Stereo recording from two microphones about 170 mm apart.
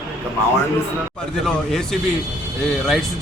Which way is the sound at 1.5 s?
Centre (ahead or behind).